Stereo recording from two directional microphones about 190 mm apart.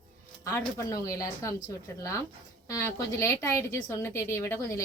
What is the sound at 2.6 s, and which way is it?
A woman's voice, 15° left (ahead or behind).